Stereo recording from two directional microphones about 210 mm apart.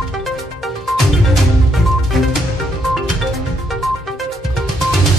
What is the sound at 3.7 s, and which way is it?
Music, centre (ahead or behind).